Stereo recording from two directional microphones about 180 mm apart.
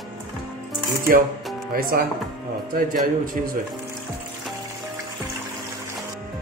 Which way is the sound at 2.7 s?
55° right (ahead or behind).